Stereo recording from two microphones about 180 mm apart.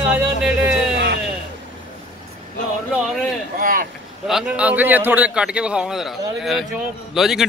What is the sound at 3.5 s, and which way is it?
Speech, 50° right (ahead or behind).